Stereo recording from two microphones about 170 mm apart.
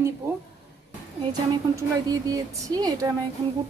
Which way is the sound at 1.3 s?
20° right (ahead or behind).